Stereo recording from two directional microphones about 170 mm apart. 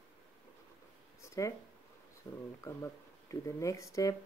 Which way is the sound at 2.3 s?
20° left (ahead or behind).